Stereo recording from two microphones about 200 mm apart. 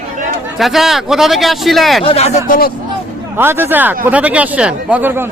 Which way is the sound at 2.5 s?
50° left (ahead or behind).